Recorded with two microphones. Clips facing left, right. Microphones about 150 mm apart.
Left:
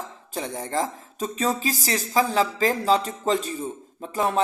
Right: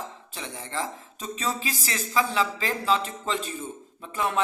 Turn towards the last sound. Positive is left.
turn(degrees=35)  # may be behind; listen again after turning